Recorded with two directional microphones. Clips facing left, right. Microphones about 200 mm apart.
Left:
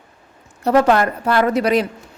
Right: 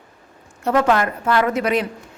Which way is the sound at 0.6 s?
35° left (ahead or behind).